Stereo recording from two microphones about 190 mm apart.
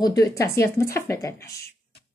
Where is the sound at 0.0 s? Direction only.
20° left (ahead or behind).